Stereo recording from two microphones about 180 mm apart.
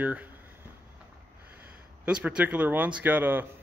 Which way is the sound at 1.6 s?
5° right (ahead or behind).